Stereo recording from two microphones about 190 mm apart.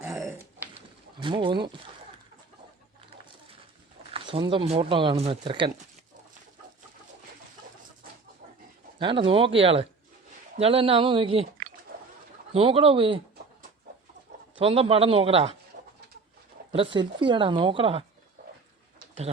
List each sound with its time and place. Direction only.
0.0 s a sound: centre (ahead or behind)
1.2 s speech: 25° right (ahead or behind)
4.1 s speech: 25° right (ahead or behind)
9.0 s speech: 25° right (ahead or behind)
11.9 s a sound: 50° right (ahead or behind)
12.5 s speech: 30° right (ahead or behind)
14.6 s a man's voice: 30° right (ahead or behind)
15.8 s bird: 55° right (ahead or behind)
16.7 s speech: 25° right (ahead or behind)